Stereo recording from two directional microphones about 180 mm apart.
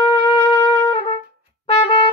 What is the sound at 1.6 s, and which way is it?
Trumpet, 30° left (ahead or behind).